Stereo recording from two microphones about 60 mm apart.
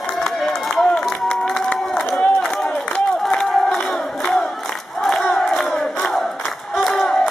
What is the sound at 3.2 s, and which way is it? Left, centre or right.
Crowd, centre.